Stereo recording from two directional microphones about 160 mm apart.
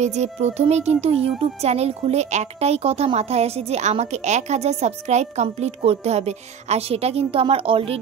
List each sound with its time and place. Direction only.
0.0 s speech: 45° right (ahead or behind)